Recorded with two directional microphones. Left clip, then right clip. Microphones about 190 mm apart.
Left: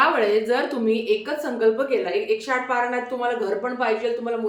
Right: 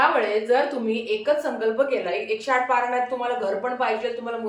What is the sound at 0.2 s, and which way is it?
A woman's voice, 20° left (ahead or behind).